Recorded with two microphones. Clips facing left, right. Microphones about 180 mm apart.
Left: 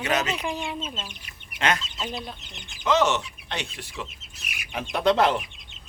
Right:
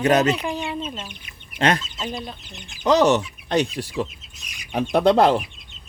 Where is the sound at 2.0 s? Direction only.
Centre (ahead or behind).